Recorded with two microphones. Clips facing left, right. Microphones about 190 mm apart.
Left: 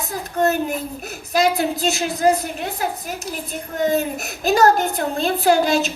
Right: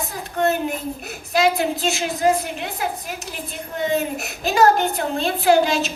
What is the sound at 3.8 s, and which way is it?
A child's voice, 40° left (ahead or behind).